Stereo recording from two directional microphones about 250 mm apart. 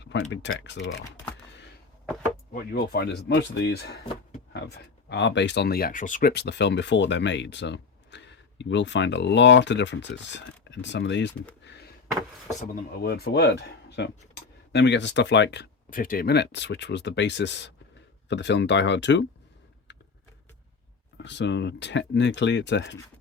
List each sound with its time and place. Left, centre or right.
0.0 s speech: left
1.0 s speech: centre
2.5 s speech: left
12.5 s speech: left
21.2 s speech: left